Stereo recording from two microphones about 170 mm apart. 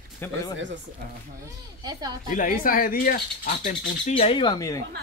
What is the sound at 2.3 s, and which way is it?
Speech, 55° left (ahead or behind).